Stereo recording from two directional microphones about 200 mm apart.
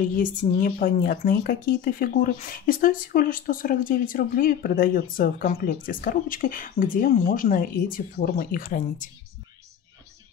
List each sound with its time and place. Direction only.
0.2 s speech: 40° left (ahead or behind)